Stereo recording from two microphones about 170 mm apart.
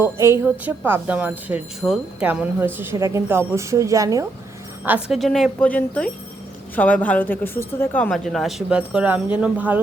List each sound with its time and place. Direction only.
0.0 s speech: 15° right (ahead or behind)
4.9 s speech: 5° right (ahead or behind)